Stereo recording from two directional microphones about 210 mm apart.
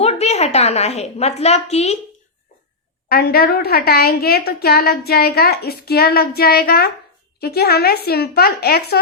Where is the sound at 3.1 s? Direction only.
50° left (ahead or behind).